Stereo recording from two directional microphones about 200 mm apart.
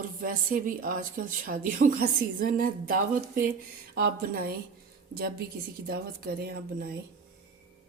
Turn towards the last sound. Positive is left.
turn(degrees=-50)  # may be behind; listen again after turning